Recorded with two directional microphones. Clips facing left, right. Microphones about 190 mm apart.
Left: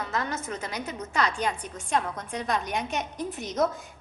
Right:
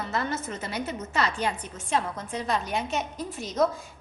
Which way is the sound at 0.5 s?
5° right (ahead or behind).